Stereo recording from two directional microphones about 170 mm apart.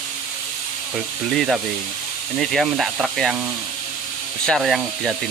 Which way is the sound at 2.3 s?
Centre (ahead or behind).